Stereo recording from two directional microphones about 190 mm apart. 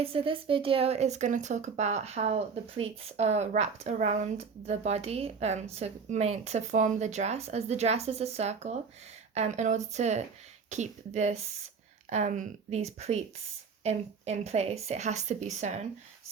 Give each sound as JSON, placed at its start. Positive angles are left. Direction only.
{"t": 0.0, "sound": "speech", "side_deg": -30}